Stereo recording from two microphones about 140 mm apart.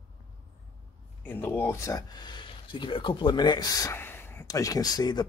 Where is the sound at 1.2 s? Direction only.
15° left (ahead or behind); by 3.9 s 30° left (ahead or behind).